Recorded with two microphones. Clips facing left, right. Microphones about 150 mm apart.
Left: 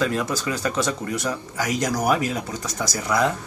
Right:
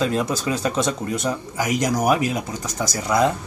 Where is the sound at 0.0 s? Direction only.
25° right (ahead or behind).